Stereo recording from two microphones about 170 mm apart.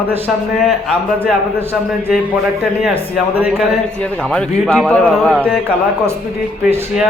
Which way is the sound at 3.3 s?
10° right (ahead or behind).